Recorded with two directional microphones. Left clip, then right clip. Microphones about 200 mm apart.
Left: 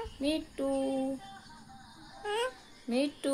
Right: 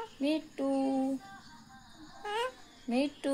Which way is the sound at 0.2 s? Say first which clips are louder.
Even; 15° left (ahead or behind).